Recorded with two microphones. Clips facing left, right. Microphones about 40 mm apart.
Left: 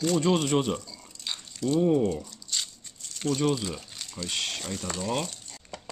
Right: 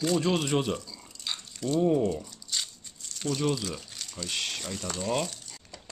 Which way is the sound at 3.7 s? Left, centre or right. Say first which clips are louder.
Left 1 dB; centre.